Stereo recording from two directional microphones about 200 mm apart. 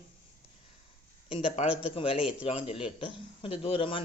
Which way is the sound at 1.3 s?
30° left (ahead or behind).